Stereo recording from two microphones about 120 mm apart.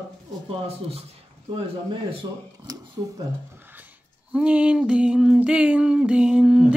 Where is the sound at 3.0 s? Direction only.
30° right (ahead or behind).